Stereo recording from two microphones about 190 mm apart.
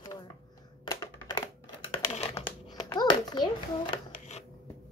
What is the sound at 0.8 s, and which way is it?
Typing, 20° left (ahead or behind).